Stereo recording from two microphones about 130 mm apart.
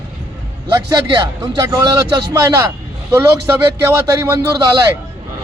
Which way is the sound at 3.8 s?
20° right (ahead or behind).